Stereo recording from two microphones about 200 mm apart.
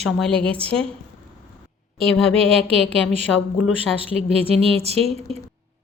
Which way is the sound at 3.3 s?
5° left (ahead or behind).